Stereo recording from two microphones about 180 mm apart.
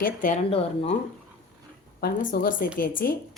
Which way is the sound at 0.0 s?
50° left (ahead or behind).